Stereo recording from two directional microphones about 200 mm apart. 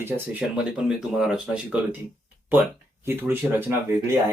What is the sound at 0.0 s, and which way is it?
Speech, 5° right (ahead or behind).